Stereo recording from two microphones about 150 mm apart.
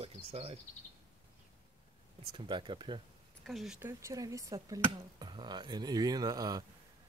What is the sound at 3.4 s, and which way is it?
Speech, centre (ahead or behind).